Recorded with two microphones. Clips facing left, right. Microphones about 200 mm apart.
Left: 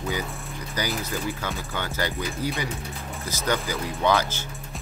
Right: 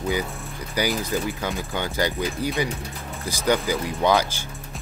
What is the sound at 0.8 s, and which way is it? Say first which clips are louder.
Speech: right 5 dB; 10° right (ahead or behind).